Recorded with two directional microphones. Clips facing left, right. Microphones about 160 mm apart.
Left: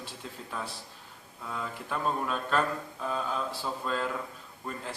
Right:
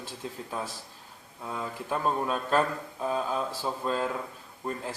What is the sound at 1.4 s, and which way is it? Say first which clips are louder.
Mantra: right 3 dB; 25° right (ahead or behind).